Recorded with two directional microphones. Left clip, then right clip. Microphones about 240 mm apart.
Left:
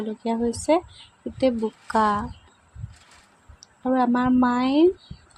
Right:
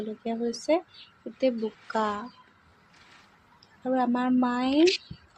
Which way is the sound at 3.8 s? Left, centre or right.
Left.